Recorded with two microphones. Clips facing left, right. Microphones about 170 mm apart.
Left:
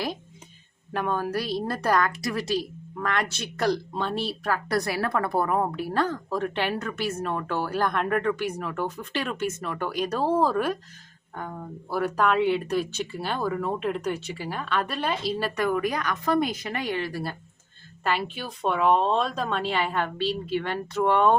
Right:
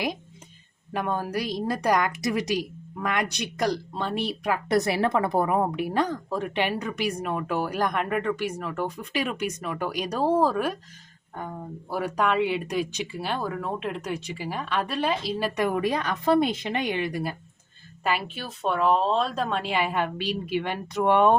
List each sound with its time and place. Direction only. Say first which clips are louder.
0.9 s a woman's voice: left 1 dB; 10° right (ahead or behind)
8.0 s a woman's voice: left 1 dB; centre (ahead or behind)
15.5 s speech: right 2 dB; 25° right (ahead or behind)
18.0 s a woman's voice: even; 5° right (ahead or behind)